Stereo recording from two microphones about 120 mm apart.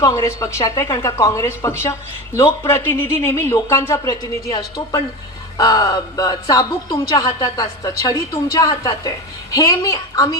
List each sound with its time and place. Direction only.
0.0 s speech: 25° left (ahead or behind)
4.1 s speech: 35° left (ahead or behind)